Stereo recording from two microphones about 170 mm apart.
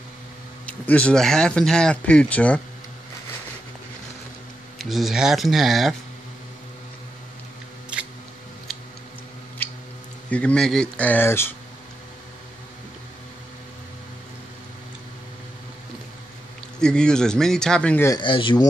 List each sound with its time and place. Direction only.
0.7 s speech: 10° left (ahead or behind)
4.7 s speech: centre (ahead or behind)
10.3 s speech: 5° left (ahead or behind)
16.8 s speech: 5° left (ahead or behind)
18.2 s speech: 30° left (ahead or behind)